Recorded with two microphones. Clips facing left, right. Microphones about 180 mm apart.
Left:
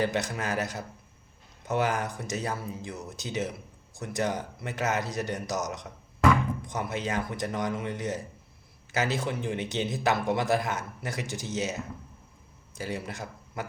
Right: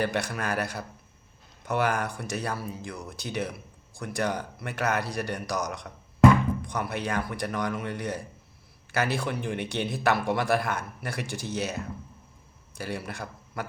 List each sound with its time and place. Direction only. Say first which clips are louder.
0.0 s speech: even; 20° left (ahead or behind)
1.6 s a man's voice: right 1 dB; 20° left (ahead or behind)